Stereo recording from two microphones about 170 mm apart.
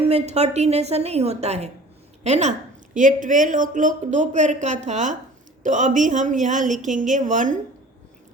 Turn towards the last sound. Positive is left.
turn(degrees=-45)  # may be behind; listen again after turning